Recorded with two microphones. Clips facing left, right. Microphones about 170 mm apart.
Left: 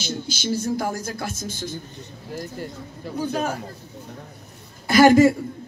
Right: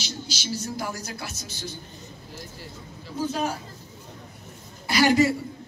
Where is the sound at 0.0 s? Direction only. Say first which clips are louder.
Left 7 dB; 50° left (ahead or behind).